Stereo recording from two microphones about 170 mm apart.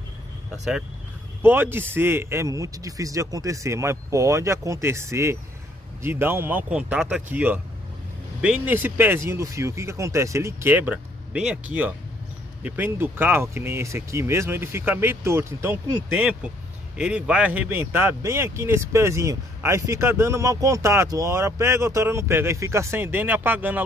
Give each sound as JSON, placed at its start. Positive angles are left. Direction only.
{"t": 1.4, "sound": "speech", "side_deg": -15}